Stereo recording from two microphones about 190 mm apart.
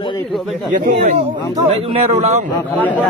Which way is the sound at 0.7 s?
35° right (ahead or behind).